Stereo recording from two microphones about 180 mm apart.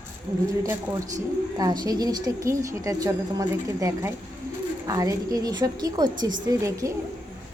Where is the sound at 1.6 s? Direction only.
20° right (ahead or behind).